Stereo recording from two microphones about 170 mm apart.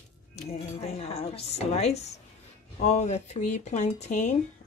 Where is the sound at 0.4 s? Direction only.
40° left (ahead or behind).